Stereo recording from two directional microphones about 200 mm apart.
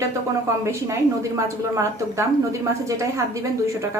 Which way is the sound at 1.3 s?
15° right (ahead or behind).